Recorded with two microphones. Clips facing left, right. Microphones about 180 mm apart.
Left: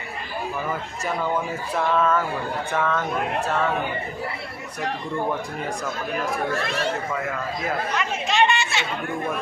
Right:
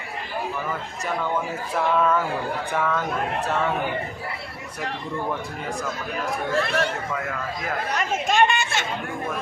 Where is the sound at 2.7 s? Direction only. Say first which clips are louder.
Left 1 dB; 10° right (ahead or behind).